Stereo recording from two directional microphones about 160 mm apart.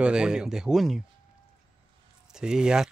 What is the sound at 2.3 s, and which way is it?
Speech, 5° right (ahead or behind).